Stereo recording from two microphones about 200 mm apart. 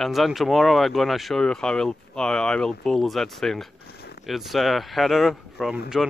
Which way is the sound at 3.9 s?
50° left (ahead or behind).